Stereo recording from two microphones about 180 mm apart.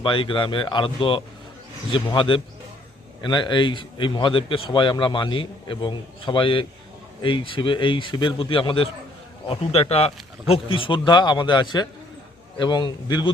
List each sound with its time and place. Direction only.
0.0 s speech: 30° left (ahead or behind)